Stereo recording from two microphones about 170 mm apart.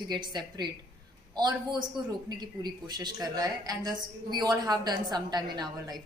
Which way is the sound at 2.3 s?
25° right (ahead or behind).